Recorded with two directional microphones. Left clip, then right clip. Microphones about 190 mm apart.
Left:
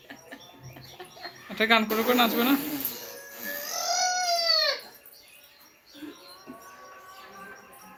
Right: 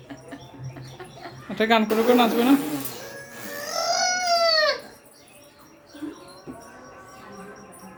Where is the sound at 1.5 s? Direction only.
20° right (ahead or behind).